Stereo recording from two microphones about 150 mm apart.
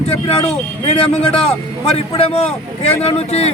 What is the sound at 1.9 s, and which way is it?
A man's voice, 45° left (ahead or behind).